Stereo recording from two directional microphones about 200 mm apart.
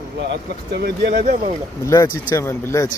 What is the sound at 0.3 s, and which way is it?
Speech, 55° right (ahead or behind).